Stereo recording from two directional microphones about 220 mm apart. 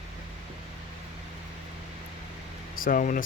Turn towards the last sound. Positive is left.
turn(degrees=35)  # may be behind; listen again after turning